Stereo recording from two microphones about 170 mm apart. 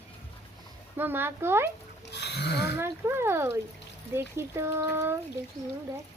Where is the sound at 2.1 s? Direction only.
80° left.